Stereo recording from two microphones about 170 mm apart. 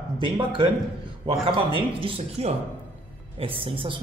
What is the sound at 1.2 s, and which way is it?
A man's voice, 30° right (ahead or behind).